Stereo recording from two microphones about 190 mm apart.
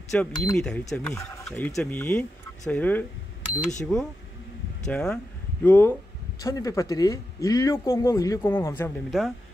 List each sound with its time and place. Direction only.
0.1 s speech: 5° left (ahead or behind)
1.4 s fowl: 10° left (ahead or behind)
1.8 s speech: 10° left (ahead or behind)
9.1 s speech: 5° right (ahead or behind)